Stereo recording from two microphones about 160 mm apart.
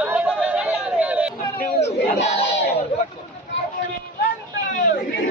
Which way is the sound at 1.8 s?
40° left (ahead or behind).